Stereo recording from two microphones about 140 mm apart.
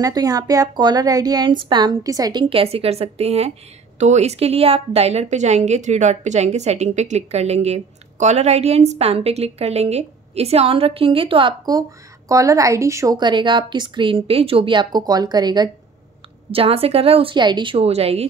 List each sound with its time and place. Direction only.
0.0 s speech: 25° right (ahead or behind)
2.5 s a woman's voice: 45° right (ahead or behind)
12.3 s a woman's voice: 25° right (ahead or behind)
16.5 s a woman's voice: 45° right (ahead or behind)